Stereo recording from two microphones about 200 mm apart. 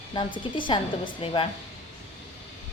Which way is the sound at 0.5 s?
25° left (ahead or behind).